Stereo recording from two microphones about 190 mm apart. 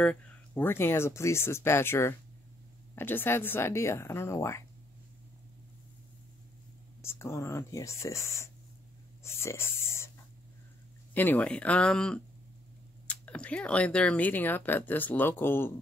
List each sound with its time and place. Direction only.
0.0 s speech: 5° left (ahead or behind)
7.0 s speech: 15° left (ahead or behind)
9.2 s a sound: 15° left (ahead or behind)
11.1 s speech: 10° left (ahead or behind)